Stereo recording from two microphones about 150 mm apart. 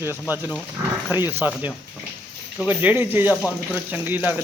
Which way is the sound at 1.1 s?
15° right (ahead or behind).